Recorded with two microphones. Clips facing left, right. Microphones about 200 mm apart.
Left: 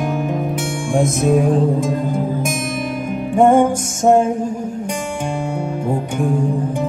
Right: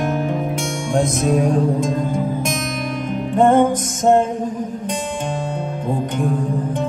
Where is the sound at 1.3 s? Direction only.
Centre (ahead or behind).